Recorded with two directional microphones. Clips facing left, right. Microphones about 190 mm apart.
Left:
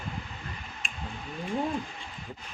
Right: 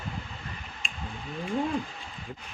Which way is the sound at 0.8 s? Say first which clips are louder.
Even; centre (ahead or behind).